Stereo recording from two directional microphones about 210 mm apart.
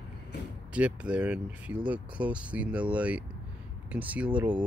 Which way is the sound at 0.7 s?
5° right (ahead or behind).